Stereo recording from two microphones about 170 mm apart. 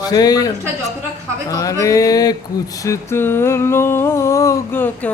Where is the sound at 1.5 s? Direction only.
20° left (ahead or behind).